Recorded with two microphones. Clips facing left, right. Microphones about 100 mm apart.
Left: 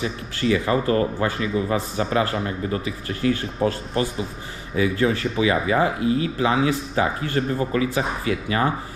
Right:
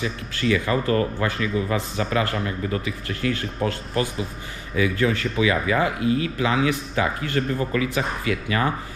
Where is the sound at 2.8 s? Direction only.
30° left (ahead or behind).